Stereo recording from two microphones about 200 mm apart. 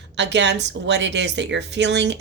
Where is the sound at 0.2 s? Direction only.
60° right (ahead or behind).